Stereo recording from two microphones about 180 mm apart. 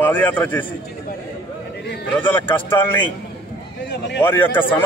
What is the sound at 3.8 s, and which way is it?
Speech, 75° left (ahead or behind).